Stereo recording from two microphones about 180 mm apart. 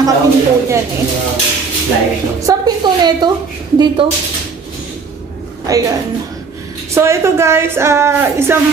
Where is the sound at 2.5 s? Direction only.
20° right (ahead or behind).